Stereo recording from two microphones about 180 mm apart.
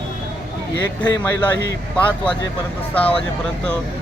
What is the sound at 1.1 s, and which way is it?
Speech, 20° left (ahead or behind).